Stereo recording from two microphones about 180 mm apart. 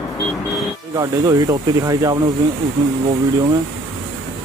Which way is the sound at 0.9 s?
20° right (ahead or behind).